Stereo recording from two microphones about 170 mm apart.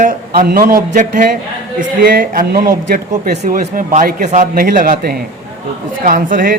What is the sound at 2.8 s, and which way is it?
Speech, 65° right (ahead or behind).